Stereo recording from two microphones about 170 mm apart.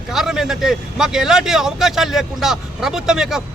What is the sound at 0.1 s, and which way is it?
Speech, 5° right (ahead or behind).